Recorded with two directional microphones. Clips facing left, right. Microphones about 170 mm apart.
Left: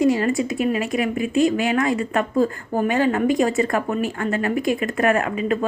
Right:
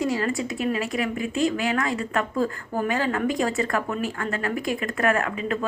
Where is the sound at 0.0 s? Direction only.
20° left (ahead or behind).